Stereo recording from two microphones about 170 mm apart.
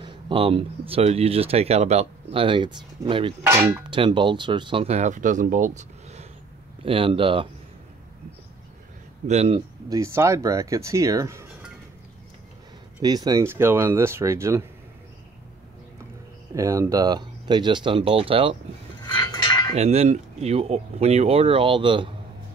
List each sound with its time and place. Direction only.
0.0 s speech: 30° right (ahead or behind)
3.4 s speech: 15° right (ahead or behind)
3.9 s speech: 30° right (ahead or behind)
6.8 s speech: 30° right (ahead or behind)
9.3 s speech: 40° right (ahead or behind)
9.8 s speech: 15° right (ahead or behind)
13.0 s speech: 25° right (ahead or behind)
16.5 s speech: 20° right (ahead or behind)
19.0 s a sound: 25° left (ahead or behind)
19.7 s speech: 40° right (ahead or behind)